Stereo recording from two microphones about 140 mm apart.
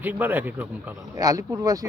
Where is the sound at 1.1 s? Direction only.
25° right (ahead or behind).